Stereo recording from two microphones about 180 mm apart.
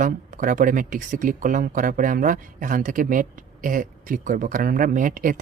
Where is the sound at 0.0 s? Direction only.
45° right (ahead or behind).